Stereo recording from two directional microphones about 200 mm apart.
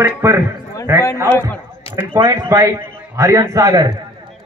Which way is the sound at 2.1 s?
15° right (ahead or behind).